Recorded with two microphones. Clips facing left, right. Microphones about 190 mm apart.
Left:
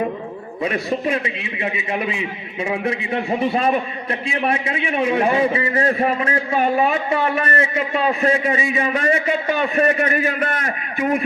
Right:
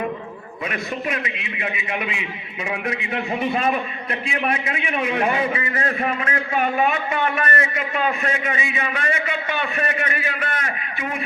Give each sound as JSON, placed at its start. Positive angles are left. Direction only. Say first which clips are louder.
{"t": 0.6, "sound": "a man's voice", "louder": "left 6 dB", "side_deg": 30}